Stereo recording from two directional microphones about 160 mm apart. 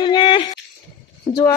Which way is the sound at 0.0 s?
30° left (ahead or behind).